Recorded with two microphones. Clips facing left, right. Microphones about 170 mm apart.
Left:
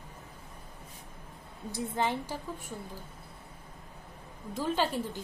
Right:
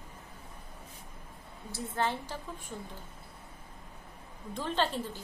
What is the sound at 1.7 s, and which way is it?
Speech, 15° left (ahead or behind).